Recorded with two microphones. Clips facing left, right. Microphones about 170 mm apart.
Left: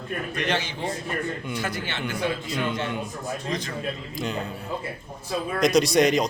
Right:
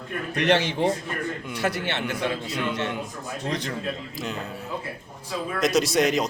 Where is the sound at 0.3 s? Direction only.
70° right (ahead or behind).